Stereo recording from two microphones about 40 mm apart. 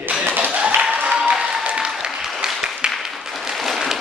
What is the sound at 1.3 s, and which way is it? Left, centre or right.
Applause, centre.